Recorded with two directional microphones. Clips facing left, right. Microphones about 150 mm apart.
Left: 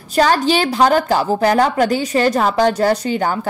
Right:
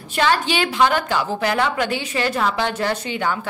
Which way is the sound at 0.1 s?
40° left (ahead or behind).